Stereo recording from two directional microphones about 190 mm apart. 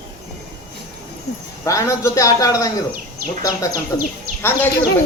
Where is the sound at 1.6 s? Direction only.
15° left (ahead or behind).